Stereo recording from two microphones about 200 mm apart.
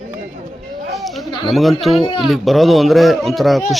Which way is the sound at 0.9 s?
Centre (ahead or behind).